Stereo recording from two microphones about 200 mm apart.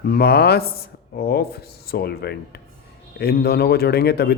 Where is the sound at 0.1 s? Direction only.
50° left (ahead or behind).